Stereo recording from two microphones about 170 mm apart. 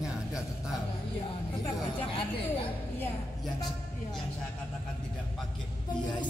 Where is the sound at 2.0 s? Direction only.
30° left (ahead or behind).